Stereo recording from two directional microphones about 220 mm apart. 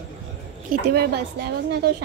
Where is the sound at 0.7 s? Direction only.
45° right (ahead or behind).